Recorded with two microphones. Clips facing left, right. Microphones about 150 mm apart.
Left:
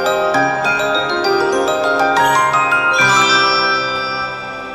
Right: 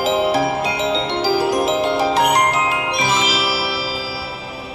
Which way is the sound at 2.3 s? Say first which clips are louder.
Left 2 dB; 90° left.